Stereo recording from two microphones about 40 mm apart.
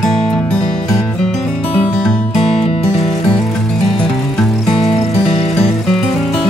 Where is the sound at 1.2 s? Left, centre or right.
Centre.